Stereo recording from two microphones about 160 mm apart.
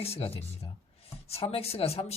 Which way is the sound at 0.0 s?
40° left (ahead or behind).